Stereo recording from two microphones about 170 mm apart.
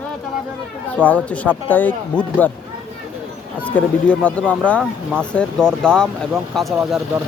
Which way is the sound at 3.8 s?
10° left (ahead or behind).